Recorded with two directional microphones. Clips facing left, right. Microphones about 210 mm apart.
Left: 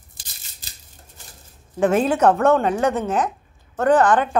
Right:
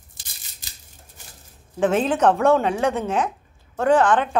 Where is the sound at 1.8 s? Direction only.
10° left (ahead or behind).